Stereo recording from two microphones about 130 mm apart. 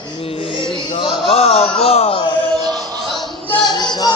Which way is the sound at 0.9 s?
40° left (ahead or behind).